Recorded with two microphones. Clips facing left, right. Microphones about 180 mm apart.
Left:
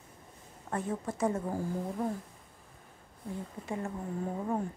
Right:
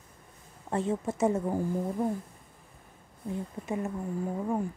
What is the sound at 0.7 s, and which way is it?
Speech, 25° right (ahead or behind).